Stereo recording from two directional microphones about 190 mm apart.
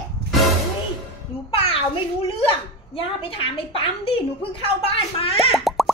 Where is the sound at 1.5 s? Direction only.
30° left (ahead or behind).